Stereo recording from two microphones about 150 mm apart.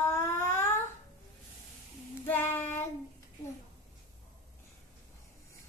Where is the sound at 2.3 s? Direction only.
15° left (ahead or behind).